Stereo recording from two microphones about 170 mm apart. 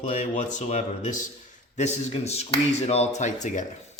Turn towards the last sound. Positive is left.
turn(degrees=45)  # may be behind; listen again after turning